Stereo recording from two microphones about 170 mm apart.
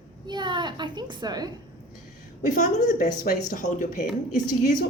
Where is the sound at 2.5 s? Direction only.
50° left (ahead or behind).